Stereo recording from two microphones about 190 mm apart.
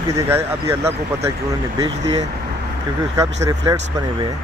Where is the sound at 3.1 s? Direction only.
20° right (ahead or behind).